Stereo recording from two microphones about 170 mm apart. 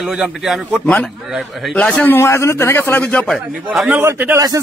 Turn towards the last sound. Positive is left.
turn(degrees=-15)  # may be behind; listen again after turning